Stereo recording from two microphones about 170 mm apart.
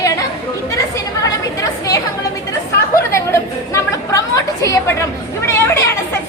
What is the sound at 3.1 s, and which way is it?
A woman's voice, 15° left (ahead or behind).